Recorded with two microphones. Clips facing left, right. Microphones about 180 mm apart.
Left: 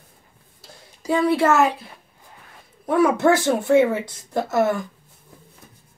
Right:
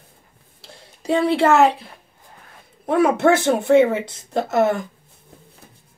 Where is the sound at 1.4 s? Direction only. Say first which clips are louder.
Right 5 dB; 60° right (ahead or behind).